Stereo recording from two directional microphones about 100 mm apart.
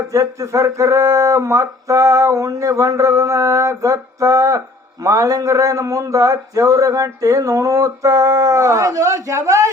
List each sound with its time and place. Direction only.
0.1 s a man's voice: 30° right (ahead or behind)